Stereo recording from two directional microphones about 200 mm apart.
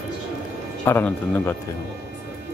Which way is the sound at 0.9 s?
10° left (ahead or behind).